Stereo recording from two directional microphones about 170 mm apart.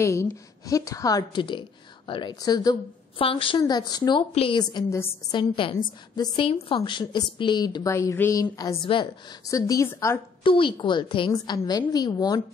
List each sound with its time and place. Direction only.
0.0 s speech: 15° left (ahead or behind)
5.4 s a woman's voice: 30° left (ahead or behind); by 10.2 s 15° left (ahead or behind)
10.4 s speech: 30° left (ahead or behind)